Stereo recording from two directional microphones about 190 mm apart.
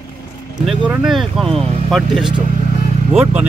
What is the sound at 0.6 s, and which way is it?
Speech, 5° right (ahead or behind).